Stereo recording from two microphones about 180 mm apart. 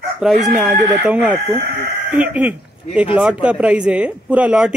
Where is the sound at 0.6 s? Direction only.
5° right (ahead or behind).